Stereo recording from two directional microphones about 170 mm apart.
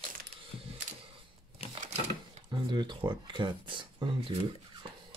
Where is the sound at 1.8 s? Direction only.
40° right (ahead or behind).